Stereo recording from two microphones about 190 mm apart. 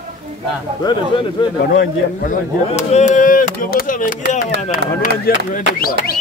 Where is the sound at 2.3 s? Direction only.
35° left (ahead or behind).